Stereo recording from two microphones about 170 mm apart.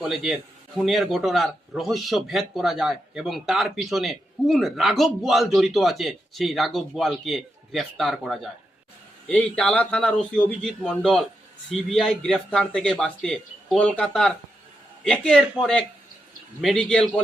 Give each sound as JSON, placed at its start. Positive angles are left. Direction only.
{"t": 0.0, "sound": "a man's voice", "side_deg": -5}
{"t": 16.6, "sound": "a man's voice", "side_deg": 5}